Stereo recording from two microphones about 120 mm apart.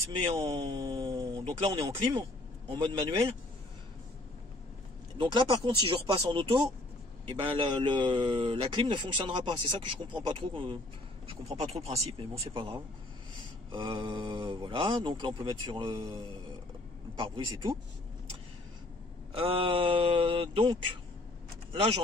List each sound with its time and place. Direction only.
0.2 s speech: 45° right (ahead or behind)
1.7 s speech: 35° right (ahead or behind)
5.1 s a man's voice: 40° right (ahead or behind)
11.2 s a man's voice: 65° right (ahead or behind); by 17.7 s 40° right (ahead or behind)
19.3 s a man's voice: 50° right (ahead or behind)